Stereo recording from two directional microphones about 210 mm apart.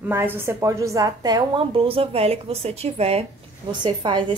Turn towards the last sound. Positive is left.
turn(degrees=-25)  # may be behind; listen again after turning